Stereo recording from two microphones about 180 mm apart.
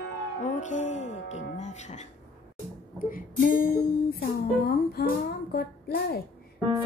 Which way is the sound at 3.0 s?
50° left (ahead or behind).